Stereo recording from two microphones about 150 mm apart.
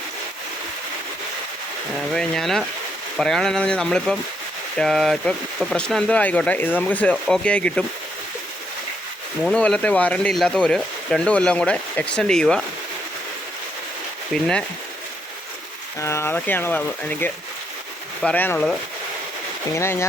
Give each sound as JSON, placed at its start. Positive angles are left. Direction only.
{"t": 2.1, "sound": "speech", "side_deg": 5}
{"t": 9.4, "sound": "speech", "side_deg": 5}
{"t": 14.3, "sound": "speech", "side_deg": 5}
{"t": 16.0, "sound": "speech", "side_deg": 20}